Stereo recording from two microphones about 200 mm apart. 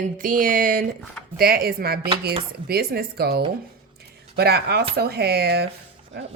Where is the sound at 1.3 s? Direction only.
50° right (ahead or behind).